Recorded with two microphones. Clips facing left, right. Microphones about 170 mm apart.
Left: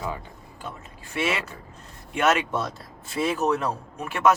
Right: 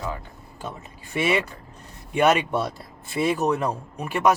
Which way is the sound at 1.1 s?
15° right (ahead or behind).